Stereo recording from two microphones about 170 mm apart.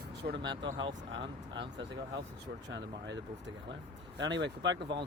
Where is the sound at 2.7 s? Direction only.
90° right.